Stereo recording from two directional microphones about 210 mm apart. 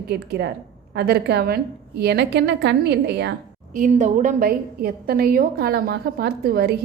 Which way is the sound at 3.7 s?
35° right (ahead or behind).